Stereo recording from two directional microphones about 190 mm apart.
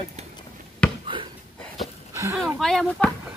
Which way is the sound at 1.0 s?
25° right (ahead or behind).